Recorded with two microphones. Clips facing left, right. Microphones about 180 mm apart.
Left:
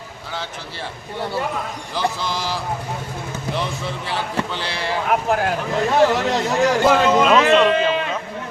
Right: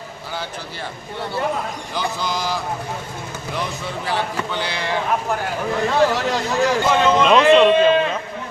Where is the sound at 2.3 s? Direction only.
5° left (ahead or behind).